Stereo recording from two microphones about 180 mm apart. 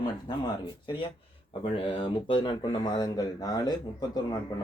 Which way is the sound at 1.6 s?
30° left (ahead or behind).